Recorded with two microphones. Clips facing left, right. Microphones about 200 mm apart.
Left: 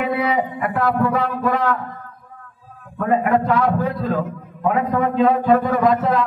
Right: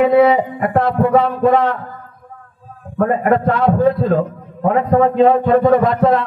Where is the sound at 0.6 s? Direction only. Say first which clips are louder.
Right 4 dB; 30° right (ahead or behind).